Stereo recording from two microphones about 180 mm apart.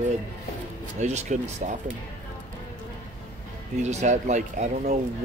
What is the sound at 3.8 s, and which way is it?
Speech, 40° right (ahead or behind).